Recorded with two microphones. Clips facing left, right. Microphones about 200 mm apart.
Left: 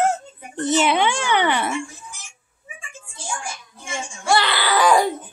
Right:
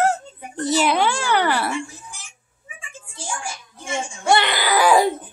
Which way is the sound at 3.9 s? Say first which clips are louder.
Right 2 dB; 20° right (ahead or behind).